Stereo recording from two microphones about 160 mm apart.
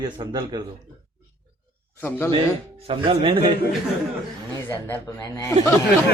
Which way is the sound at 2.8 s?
35° right (ahead or behind).